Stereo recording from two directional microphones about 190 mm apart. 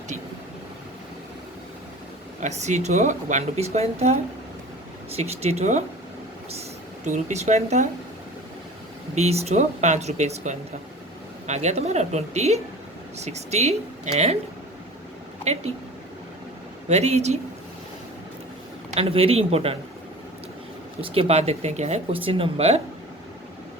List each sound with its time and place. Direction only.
2.4 s speech: 35° right (ahead or behind)
9.1 s speech: 35° right (ahead or behind)
15.5 s speech: 35° right (ahead or behind)
16.9 s speech: 35° right (ahead or behind)
18.9 s speech: 30° right (ahead or behind)
21.0 s speech: 30° right (ahead or behind)